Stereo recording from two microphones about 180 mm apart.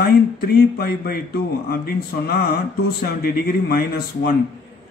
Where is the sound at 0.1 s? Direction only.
60° left (ahead or behind).